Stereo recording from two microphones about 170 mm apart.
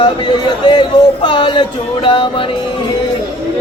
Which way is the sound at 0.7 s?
25° left (ahead or behind).